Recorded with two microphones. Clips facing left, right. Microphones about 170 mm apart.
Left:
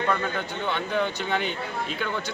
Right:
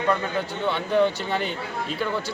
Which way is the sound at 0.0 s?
5° right (ahead or behind).